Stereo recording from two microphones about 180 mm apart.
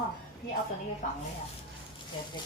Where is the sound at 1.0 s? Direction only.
45° left (ahead or behind).